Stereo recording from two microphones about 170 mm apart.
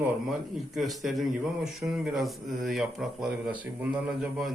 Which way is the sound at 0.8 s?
Centre (ahead or behind).